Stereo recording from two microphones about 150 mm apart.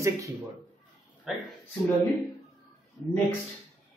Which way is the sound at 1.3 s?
Centre (ahead or behind).